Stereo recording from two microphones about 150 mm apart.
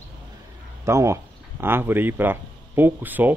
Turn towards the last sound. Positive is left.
turn(degrees=-10)  # may be behind; listen again after turning